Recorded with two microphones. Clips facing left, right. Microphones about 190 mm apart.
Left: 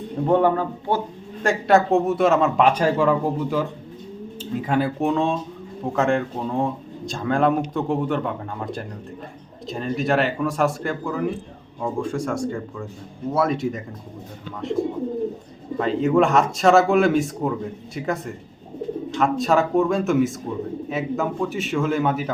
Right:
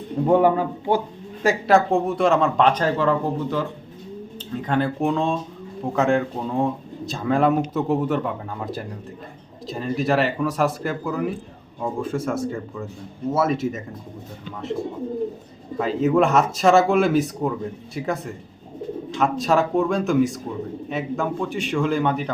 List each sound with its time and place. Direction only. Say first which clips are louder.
0.3 s speech: right 1 dB; 10° right (ahead or behind); by 3.6 s 10° left (ahead or behind)
4.6 s speech: even; 5° left (ahead or behind)
15.8 s speech: even; centre (ahead or behind)